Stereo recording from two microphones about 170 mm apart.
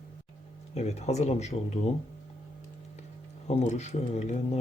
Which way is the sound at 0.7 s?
40° left (ahead or behind).